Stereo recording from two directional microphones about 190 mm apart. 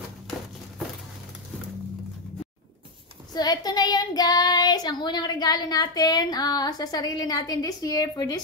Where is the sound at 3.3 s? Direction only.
20° left (ahead or behind).